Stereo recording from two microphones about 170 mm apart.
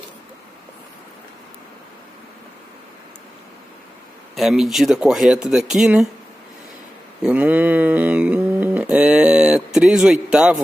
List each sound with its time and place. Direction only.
4.4 s speech: centre (ahead or behind)
7.2 s mantra: 5° right (ahead or behind)